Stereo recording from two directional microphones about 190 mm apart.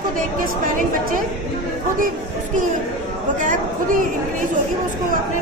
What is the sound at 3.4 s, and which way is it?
Speech, 40° right (ahead or behind).